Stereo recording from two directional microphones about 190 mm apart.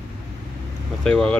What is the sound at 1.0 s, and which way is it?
Speech, 5° left (ahead or behind).